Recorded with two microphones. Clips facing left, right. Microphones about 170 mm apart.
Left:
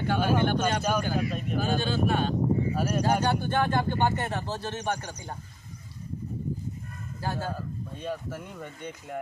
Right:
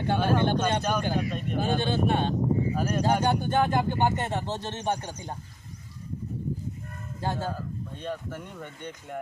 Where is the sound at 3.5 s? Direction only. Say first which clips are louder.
Right 1 dB; 20° right (ahead or behind).